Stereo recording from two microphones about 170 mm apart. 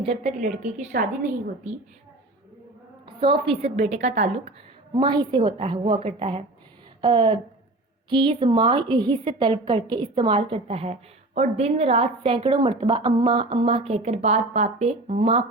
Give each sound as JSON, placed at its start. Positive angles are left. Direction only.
{"t": 0.0, "sound": "a woman's voice", "side_deg": -40}
{"t": 0.4, "sound": "a woman's voice", "side_deg": -50}
{"t": 3.1, "sound": "a woman's voice", "side_deg": -30}
{"t": 4.9, "sound": "a woman's voice", "side_deg": -25}